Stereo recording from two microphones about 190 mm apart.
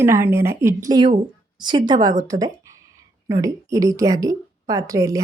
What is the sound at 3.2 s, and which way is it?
Speech, 15° right (ahead or behind).